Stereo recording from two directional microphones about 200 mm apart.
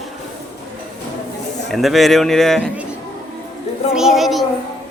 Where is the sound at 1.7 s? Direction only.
Centre (ahead or behind).